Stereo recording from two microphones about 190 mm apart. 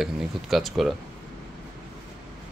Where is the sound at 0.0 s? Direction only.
Centre (ahead or behind).